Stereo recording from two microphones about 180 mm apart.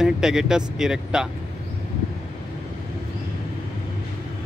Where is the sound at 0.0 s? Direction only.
5° right (ahead or behind).